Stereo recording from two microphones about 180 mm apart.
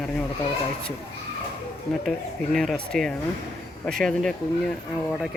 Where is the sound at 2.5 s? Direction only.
Centre (ahead or behind).